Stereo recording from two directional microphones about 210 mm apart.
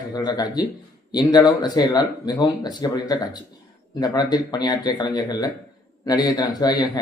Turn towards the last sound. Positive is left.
turn(degrees=20)  # may be behind; listen again after turning